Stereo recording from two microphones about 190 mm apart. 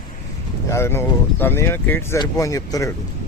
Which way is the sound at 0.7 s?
10° left (ahead or behind).